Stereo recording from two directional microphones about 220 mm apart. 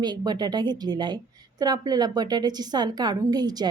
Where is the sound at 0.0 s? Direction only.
20° right (ahead or behind).